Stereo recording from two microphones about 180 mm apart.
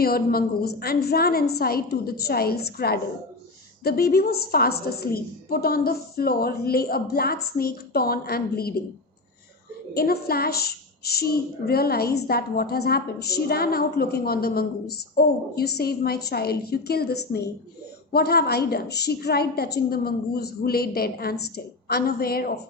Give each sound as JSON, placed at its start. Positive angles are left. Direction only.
{"t": 0.0, "sound": "a woman's voice", "side_deg": 55}
{"t": 9.9, "sound": "a woman's voice", "side_deg": 60}